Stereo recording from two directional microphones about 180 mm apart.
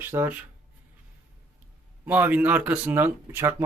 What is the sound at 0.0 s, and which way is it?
Speech, 15° right (ahead or behind).